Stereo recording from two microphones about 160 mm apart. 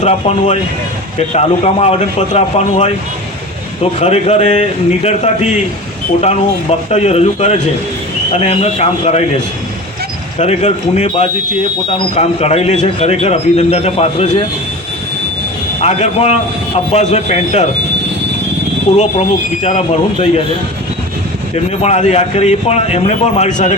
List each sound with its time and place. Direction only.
0.0 s speech: 45° left (ahead or behind)
4.0 s speech: 45° left (ahead or behind)
10.3 s speech: 40° left (ahead or behind)
12.1 s speech: 40° left (ahead or behind)
15.8 s speech: 40° left (ahead or behind)
18.9 s speech: 50° left (ahead or behind)
21.5 s speech: 40° left (ahead or behind)